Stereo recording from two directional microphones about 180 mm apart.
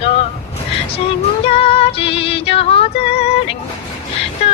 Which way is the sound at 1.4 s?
30° left (ahead or behind).